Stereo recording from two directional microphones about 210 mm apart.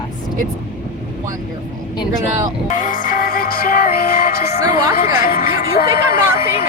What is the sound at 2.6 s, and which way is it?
Music, 40° left (ahead or behind).